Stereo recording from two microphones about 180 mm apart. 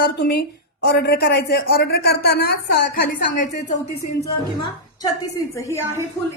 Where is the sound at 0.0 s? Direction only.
65° left (ahead or behind).